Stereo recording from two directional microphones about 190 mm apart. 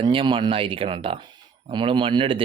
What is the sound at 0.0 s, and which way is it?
Speech, 30° right (ahead or behind).